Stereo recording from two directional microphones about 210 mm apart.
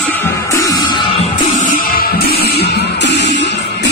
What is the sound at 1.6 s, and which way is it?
Music, 45° left (ahead or behind).